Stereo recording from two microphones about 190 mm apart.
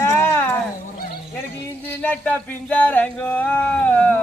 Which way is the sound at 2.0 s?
10° left (ahead or behind).